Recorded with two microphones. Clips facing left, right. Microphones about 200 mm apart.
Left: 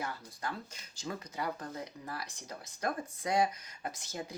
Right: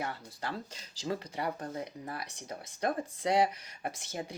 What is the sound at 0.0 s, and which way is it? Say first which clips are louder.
Speech: right 2 dB; 30° right (ahead or behind).